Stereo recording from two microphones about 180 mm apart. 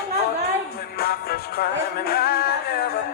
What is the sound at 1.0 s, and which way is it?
Music, 55° left (ahead or behind).